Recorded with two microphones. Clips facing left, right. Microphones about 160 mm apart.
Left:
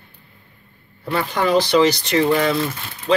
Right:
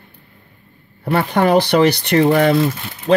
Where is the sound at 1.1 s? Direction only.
60° right (ahead or behind).